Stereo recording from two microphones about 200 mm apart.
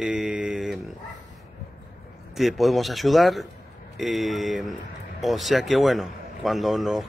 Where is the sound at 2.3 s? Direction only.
Centre (ahead or behind).